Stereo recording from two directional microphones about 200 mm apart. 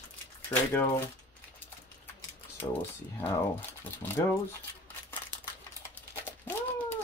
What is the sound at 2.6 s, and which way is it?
Speech, 20° left (ahead or behind).